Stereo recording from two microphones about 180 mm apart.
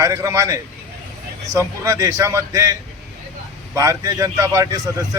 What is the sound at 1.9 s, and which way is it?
A man's voice, 15° right (ahead or behind).